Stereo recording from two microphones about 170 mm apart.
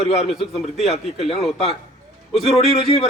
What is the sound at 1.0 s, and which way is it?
Speech, 35° left (ahead or behind).